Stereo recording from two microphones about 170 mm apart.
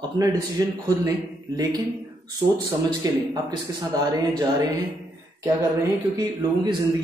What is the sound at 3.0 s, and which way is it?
Speech, 25° right (ahead or behind).